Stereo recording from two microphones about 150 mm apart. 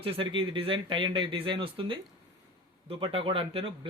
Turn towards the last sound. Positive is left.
turn(degrees=-35)  # may be behind; listen again after turning